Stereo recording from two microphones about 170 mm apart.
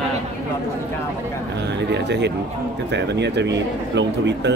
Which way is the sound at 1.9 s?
90° right.